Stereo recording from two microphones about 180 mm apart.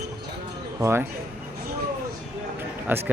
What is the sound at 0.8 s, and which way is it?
Speech, 15° right (ahead or behind).